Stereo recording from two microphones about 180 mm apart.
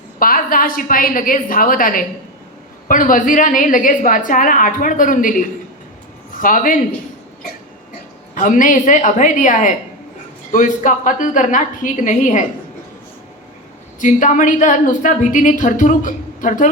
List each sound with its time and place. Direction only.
0.2 s speech: 50° left (ahead or behind)
8.4 s speech: 45° left (ahead or behind)
14.0 s speech: 45° left (ahead or behind)